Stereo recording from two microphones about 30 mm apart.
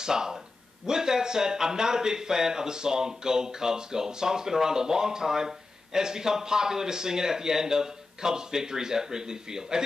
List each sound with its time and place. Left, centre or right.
0.0 s a man's voice: right